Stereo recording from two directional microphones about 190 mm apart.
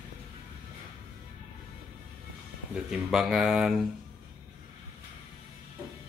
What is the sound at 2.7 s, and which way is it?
Speech, 5° right (ahead or behind).